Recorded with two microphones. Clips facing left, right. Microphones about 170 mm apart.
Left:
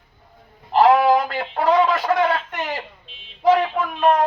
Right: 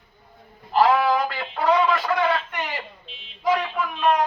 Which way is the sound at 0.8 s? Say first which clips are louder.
Left 4 dB; 45° left (ahead or behind).